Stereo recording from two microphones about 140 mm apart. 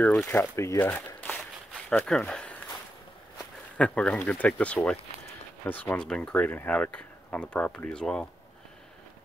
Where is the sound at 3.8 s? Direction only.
10° left (ahead or behind).